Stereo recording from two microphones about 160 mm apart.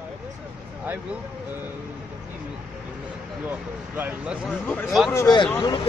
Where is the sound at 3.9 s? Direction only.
10° right (ahead or behind).